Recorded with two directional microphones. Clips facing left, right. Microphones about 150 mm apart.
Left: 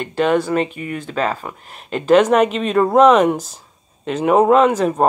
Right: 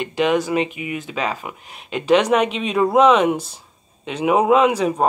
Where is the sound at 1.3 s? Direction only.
10° right (ahead or behind).